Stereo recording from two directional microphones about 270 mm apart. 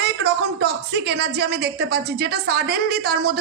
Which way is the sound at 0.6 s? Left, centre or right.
Right.